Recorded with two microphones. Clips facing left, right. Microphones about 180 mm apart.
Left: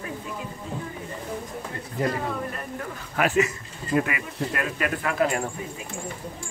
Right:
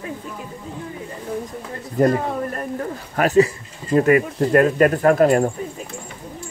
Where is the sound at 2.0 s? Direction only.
45° right (ahead or behind).